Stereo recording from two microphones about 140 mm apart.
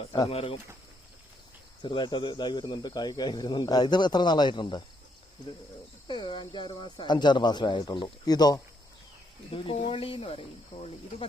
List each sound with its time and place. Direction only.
0.1 s speech: 40° left (ahead or behind)
1.8 s speech: 35° left (ahead or behind)
6.1 s speech: 35° left (ahead or behind)
9.6 s speech: 40° left (ahead or behind)